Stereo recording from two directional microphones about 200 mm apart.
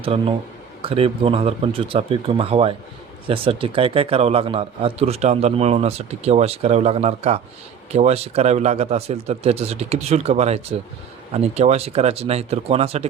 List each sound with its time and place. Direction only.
0.0 s a man's voice: 30° right (ahead or behind)